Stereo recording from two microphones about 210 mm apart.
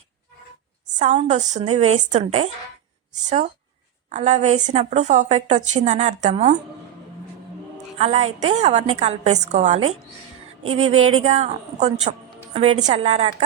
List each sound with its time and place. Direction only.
0.9 s a woman's voice: 35° right (ahead or behind)
7.9 s a woman's voice: 30° right (ahead or behind)
10.6 s a sound: 85° right
11.2 s a woman's voice: 30° right (ahead or behind)